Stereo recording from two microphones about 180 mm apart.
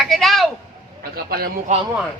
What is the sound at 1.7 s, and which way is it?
Speech, 40° right (ahead or behind).